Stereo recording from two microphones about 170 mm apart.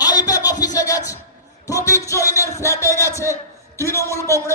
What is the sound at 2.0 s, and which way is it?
Music, 20° left (ahead or behind).